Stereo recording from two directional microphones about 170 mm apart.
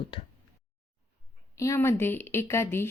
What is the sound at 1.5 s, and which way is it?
A woman's voice, 15° left (ahead or behind).